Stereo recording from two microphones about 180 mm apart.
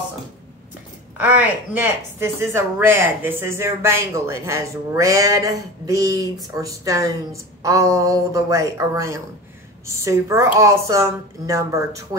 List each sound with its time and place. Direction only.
1.1 s a woman's voice: 10° right (ahead or behind)